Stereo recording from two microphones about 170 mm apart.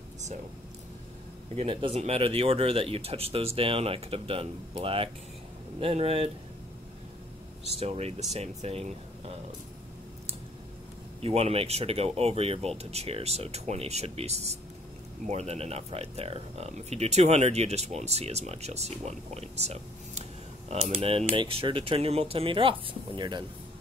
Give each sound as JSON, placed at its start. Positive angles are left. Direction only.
{"t": 1.6, "sound": "speech", "side_deg": -30}
{"t": 7.8, "sound": "speech", "side_deg": -35}
{"t": 11.1, "sound": "speech", "side_deg": -35}